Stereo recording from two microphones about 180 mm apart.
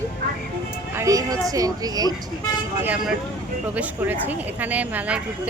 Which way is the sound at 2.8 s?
5° right (ahead or behind).